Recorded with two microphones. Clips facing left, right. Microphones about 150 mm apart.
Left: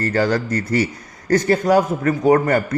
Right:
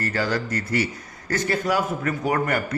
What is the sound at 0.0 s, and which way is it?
A man's voice, 45° left (ahead or behind).